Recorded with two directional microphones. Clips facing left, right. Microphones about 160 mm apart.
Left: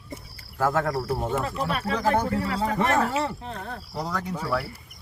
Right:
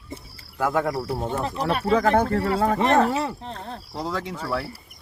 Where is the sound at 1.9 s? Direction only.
55° right (ahead or behind).